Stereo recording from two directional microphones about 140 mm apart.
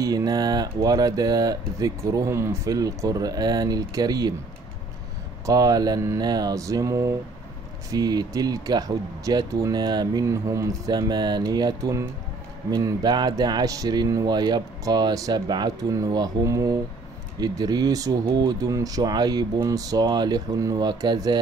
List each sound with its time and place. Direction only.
0.0 s speech: 25° right (ahead or behind)
5.5 s speech: 25° right (ahead or behind)